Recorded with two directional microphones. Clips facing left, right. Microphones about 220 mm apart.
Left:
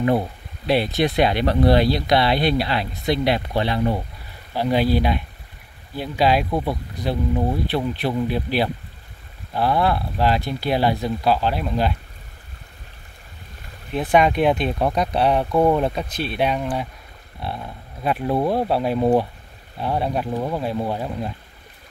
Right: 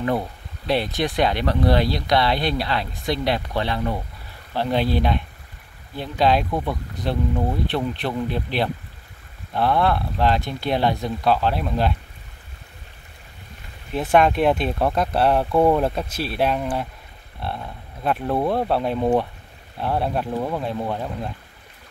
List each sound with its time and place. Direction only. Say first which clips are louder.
0.9 s speech: left 3 dB; 25° left (ahead or behind)
2.2 s speech: left 3 dB; 5° left (ahead or behind); by 4.0 s 20° left (ahead or behind)
4.6 s speech: left 2 dB; 5° left (ahead or behind)
13.9 s speech: even; centre (ahead or behind)